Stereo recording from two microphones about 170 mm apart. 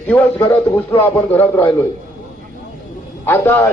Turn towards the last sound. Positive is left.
turn(degrees=15)  # may be behind; listen again after turning